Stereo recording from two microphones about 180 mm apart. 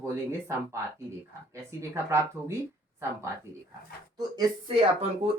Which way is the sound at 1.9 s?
15° right (ahead or behind).